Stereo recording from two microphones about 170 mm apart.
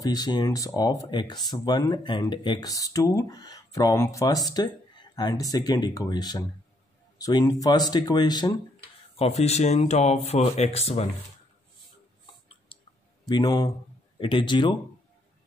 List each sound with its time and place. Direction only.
0.0 s speech: 25° left (ahead or behind)
9.2 s speech: 40° left (ahead or behind)
12.7 s clicking: 30° left (ahead or behind)
13.3 s speech: 20° left (ahead or behind)